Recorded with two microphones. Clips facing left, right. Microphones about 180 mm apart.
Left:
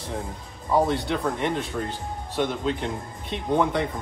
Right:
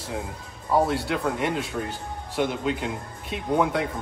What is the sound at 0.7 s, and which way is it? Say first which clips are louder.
A man's voice: even; 5° right (ahead or behind).